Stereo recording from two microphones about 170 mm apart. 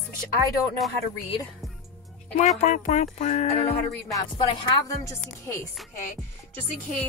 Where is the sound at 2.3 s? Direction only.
40° left (ahead or behind).